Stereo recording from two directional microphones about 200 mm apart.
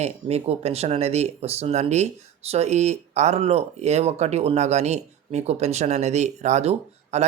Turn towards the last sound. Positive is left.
turn(degrees=-35)  # may be behind; listen again after turning